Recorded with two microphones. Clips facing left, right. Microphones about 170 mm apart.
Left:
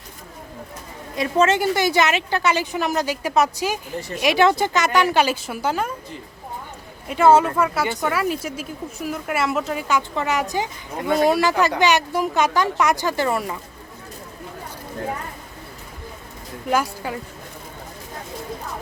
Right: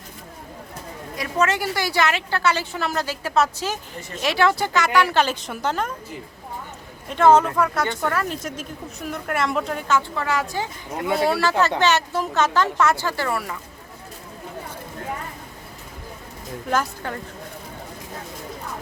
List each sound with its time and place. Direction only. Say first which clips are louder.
1.1 s a woman's voice: left 4 dB; 25° left (ahead or behind); by 5.9 s 10° left (ahead or behind)
7.1 s a woman's voice: left 1 dB; 10° left (ahead or behind)
16.6 s a woman's voice: left 2 dB; 10° left (ahead or behind)